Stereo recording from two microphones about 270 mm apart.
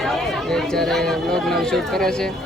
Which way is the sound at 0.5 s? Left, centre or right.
Centre.